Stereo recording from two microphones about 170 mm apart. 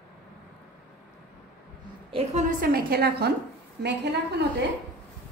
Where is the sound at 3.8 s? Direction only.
85° right.